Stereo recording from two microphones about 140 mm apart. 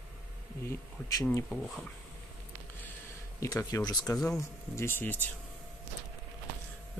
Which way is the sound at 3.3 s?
25° left (ahead or behind).